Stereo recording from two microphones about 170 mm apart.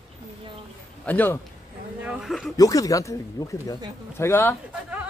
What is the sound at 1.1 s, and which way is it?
Speech, 10° left (ahead or behind).